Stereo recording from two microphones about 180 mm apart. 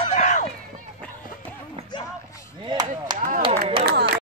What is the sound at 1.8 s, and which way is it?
Music, 35° right (ahead or behind).